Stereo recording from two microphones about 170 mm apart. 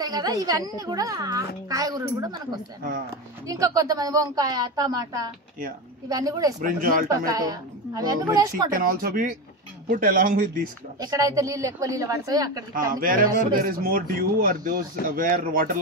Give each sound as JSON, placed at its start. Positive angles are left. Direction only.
{"t": 0.0, "sound": "a woman's voice", "side_deg": -25}
{"t": 6.6, "sound": "speech", "side_deg": -55}
{"t": 7.1, "sound": "a woman's voice", "side_deg": -20}
{"t": 8.7, "sound": "speech", "side_deg": -55}
{"t": 11.0, "sound": "a woman's voice", "side_deg": -20}
{"t": 12.9, "sound": "speech", "side_deg": -55}